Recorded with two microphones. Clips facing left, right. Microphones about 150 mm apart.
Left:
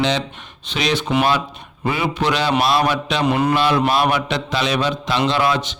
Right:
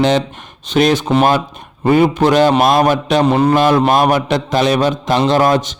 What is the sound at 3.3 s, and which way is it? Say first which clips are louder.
Speech: right 3 dB; 30° right (ahead or behind).